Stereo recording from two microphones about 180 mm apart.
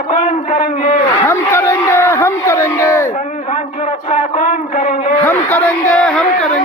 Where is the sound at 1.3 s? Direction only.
15° left (ahead or behind).